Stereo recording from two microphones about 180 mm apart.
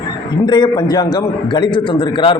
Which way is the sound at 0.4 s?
25° left (ahead or behind).